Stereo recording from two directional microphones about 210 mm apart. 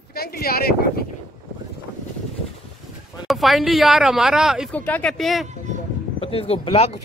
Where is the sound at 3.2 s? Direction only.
Centre (ahead or behind).